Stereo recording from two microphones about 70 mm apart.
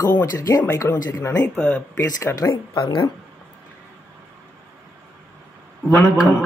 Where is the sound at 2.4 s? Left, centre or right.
Left.